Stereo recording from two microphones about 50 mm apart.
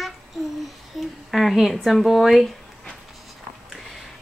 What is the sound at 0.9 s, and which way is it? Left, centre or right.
Speech, centre.